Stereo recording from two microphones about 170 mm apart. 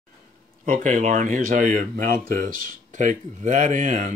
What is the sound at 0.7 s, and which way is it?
Speech, 45° right (ahead or behind).